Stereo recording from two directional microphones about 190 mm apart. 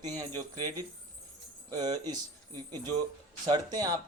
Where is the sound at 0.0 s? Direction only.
20° right (ahead or behind).